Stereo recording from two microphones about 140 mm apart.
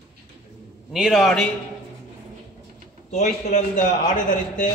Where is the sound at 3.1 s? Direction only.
55° left (ahead or behind).